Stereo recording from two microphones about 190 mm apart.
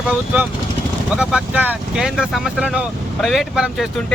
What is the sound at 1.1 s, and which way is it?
Speech, 5° right (ahead or behind).